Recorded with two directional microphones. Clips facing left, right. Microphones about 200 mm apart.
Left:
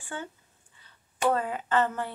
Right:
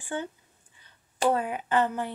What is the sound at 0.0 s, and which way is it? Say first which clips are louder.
Speech: right 5 dB; 20° right (ahead or behind).